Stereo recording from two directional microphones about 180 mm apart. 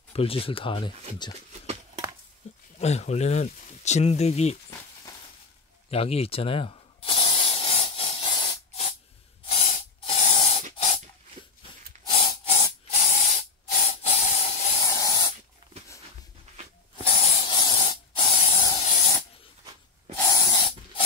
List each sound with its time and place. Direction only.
0.1 s speech: 30° left (ahead or behind)
2.4 s a sound: 40° left (ahead or behind)
2.8 s speech: 40° left (ahead or behind)
5.9 s spray: 35° left (ahead or behind)
9.7 s spray: 40° left (ahead or behind)
10.3 s a sound: 35° left (ahead or behind)
12.1 s a sound: 30° left (ahead or behind)
12.9 s spray: 45° left (ahead or behind)
14.8 s spray: 20° left (ahead or behind)
17.0 s hiss: 35° left (ahead or behind)
17.6 s spray: 25° left (ahead or behind)
18.8 s spray: 45° left (ahead or behind)
20.2 s spray: 20° left (ahead or behind)